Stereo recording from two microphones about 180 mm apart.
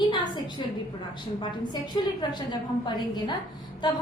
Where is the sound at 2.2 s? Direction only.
25° left (ahead or behind).